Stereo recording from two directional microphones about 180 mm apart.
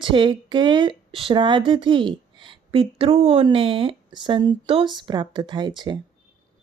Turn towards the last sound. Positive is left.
turn(degrees=-25)  # may be behind; listen again after turning